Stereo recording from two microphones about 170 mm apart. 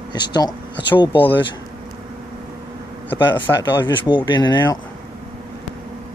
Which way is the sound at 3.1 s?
25° left (ahead or behind).